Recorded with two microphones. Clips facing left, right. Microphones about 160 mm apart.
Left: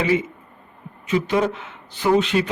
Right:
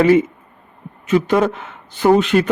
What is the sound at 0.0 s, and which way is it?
A man's voice, 50° right (ahead or behind).